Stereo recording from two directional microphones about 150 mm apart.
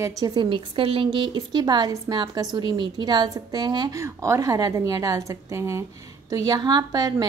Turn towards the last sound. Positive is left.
turn(degrees=-25)  # may be behind; listen again after turning